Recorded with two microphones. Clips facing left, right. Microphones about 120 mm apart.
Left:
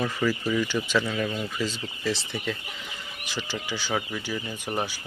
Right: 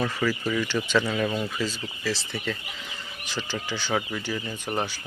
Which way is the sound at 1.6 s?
20° left (ahead or behind).